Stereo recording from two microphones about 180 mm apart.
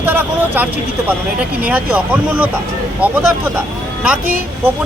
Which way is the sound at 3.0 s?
10° right (ahead or behind).